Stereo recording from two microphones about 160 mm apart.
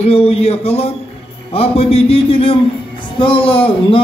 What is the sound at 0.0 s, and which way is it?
A man's voice, 40° left (ahead or behind).